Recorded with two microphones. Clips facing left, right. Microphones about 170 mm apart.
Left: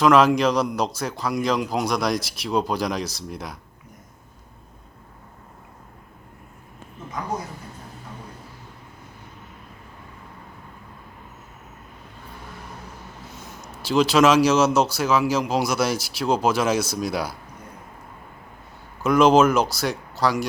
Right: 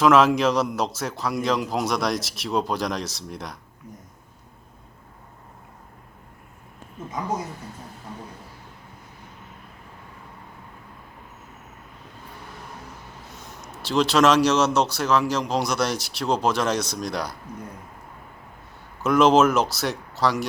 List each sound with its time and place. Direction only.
0.0 s a man's voice: centre (ahead or behind)
13.8 s a man's voice: centre (ahead or behind)
19.0 s a man's voice: centre (ahead or behind)